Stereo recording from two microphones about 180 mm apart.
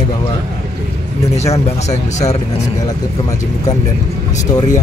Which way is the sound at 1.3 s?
35° left (ahead or behind).